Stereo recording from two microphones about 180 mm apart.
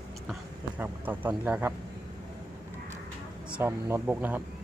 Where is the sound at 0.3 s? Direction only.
10° right (ahead or behind).